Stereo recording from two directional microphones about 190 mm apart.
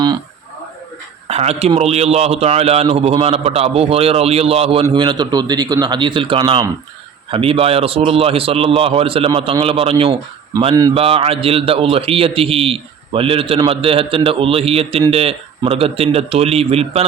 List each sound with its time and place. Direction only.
1.3 s a man's voice: 35° right (ahead or behind)